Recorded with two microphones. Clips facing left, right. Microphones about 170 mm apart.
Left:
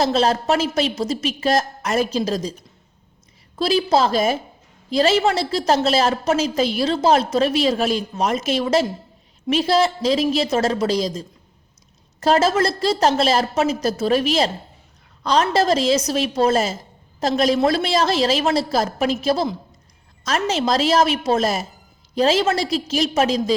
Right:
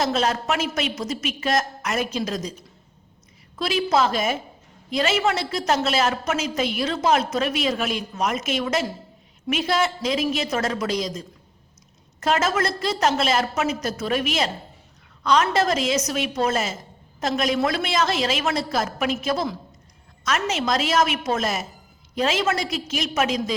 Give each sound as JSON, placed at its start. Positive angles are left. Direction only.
{"t": 0.0, "sound": "a woman's voice", "side_deg": 30}